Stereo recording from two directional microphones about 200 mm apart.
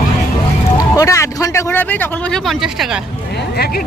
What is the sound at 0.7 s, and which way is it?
A man's voice, 15° left (ahead or behind).